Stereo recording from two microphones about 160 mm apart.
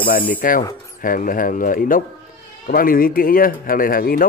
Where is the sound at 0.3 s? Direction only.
60° left (ahead or behind).